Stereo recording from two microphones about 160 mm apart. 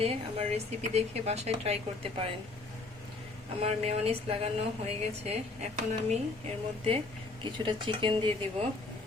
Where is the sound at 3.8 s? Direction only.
40° right (ahead or behind).